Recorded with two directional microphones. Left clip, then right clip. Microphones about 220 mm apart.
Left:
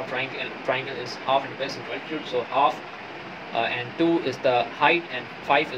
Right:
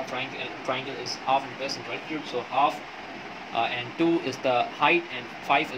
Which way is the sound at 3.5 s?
15° right (ahead or behind).